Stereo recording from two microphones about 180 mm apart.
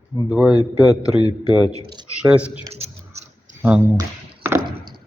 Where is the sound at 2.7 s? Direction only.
35° right (ahead or behind).